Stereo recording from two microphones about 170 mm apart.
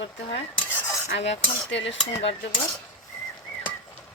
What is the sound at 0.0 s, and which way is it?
Dishes, 90° left.